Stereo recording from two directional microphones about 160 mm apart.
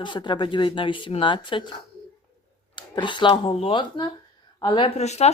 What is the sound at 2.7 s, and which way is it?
Speech, 30° left (ahead or behind).